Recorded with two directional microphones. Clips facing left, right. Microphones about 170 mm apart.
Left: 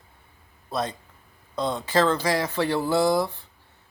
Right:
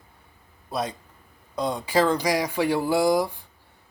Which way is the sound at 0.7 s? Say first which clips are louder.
Even; 10° right (ahead or behind).